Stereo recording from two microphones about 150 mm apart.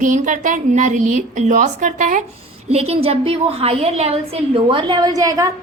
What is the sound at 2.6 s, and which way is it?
A woman's voice, 45° right (ahead or behind).